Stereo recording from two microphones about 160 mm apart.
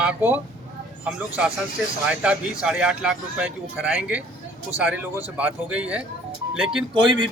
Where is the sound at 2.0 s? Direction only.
5° right (ahead or behind).